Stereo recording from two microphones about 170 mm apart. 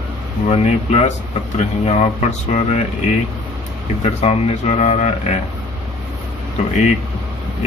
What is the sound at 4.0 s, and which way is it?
Speech, 35° left (ahead or behind).